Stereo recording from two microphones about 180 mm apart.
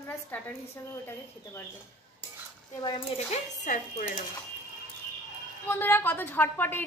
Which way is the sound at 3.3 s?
40° left (ahead or behind).